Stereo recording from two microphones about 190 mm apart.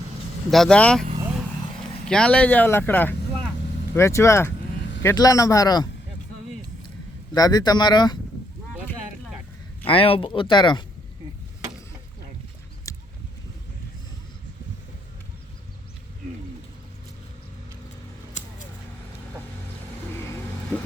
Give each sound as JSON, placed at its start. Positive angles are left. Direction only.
{"t": 0.5, "sound": "speech", "side_deg": 5}
{"t": 2.0, "sound": "speech", "side_deg": 5}
{"t": 7.3, "sound": "speech", "side_deg": 20}
{"t": 9.8, "sound": "speech", "side_deg": 30}
{"t": 12.9, "sound": "a sound", "side_deg": 15}
{"t": 18.4, "sound": "a sound", "side_deg": 40}
{"t": 20.1, "sound": "vehicle", "side_deg": 15}